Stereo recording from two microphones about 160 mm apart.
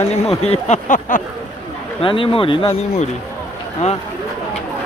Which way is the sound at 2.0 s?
35° left (ahead or behind).